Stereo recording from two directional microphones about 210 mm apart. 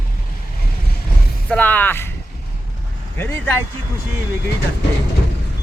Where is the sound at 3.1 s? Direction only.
10° left (ahead or behind).